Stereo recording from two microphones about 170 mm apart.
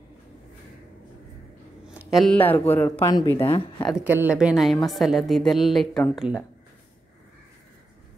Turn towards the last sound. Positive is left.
turn(degrees=5)  # may be behind; listen again after turning